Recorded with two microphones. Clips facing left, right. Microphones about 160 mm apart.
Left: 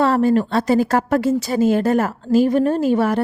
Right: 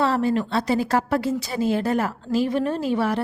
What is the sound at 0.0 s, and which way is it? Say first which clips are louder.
A woman's voice: left 5 dB; 50° left (ahead or behind).